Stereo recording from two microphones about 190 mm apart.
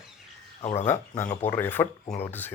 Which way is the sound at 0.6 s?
35° left (ahead or behind).